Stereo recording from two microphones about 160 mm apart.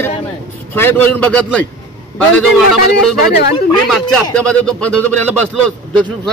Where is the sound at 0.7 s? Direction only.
10° left (ahead or behind).